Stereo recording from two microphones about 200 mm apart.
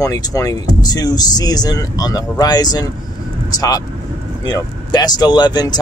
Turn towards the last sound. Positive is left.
turn(degrees=20)  # may be behind; listen again after turning